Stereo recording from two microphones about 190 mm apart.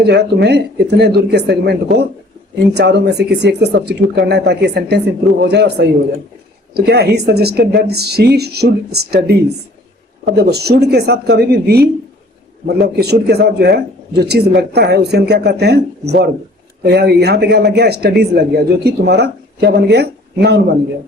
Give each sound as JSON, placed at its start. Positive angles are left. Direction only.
{"t": 0.0, "sound": "speech", "side_deg": -60}
{"t": 2.7, "sound": "speech", "side_deg": -65}